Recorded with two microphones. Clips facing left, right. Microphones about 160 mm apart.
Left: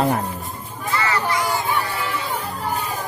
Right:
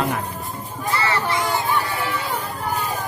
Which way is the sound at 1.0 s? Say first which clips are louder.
Left 1 dB; 30° right (ahead or behind).